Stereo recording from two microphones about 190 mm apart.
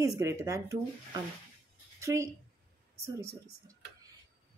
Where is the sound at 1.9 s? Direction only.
15° right (ahead or behind).